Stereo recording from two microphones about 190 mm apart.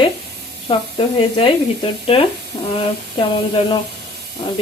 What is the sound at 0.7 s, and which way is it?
A woman's voice, 30° left (ahead or behind).